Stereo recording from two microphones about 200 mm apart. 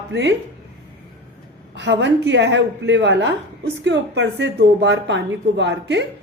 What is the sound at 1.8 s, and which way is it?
A woman's voice, 60° right (ahead or behind).